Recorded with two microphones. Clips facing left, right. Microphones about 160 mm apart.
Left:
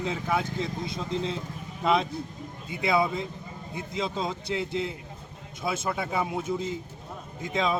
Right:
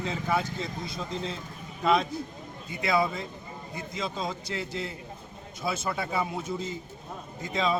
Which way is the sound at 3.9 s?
25° left (ahead or behind).